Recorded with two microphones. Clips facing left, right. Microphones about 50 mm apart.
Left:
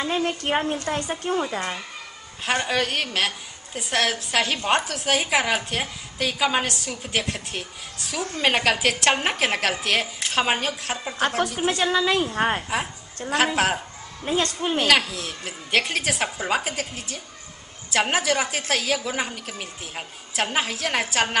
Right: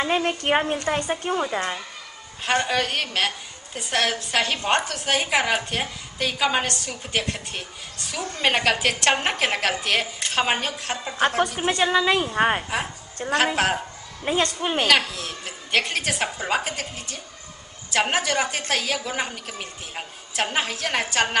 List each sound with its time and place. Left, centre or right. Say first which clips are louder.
0.0 s a woman's voice: right 2 dB; right
2.4 s a woman's voice: right 1 dB; centre
12.6 s a woman's voice: even; centre
14.2 s a woman's voice: right 1 dB; centre
14.9 s a woman's voice: even; centre